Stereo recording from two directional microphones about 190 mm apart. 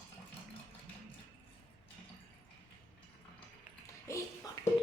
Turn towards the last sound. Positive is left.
turn(degrees=15)  # may be behind; listen again after turning